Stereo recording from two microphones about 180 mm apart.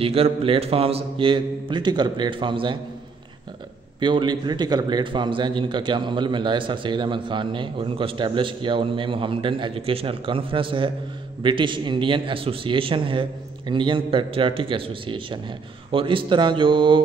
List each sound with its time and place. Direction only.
0.0 s a man's voice: 30° right (ahead or behind)
4.0 s a man's voice: 25° right (ahead or behind)